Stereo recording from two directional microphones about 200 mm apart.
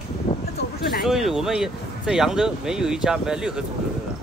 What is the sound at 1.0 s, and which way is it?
Speech, centre (ahead or behind).